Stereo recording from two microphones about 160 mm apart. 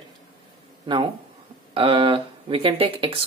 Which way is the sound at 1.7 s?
35° right (ahead or behind).